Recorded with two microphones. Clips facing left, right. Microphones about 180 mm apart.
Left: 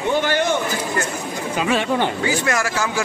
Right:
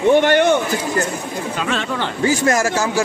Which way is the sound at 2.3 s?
40° right (ahead or behind).